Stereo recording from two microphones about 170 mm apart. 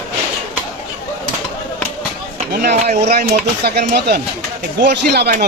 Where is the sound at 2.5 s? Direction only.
65° right (ahead or behind).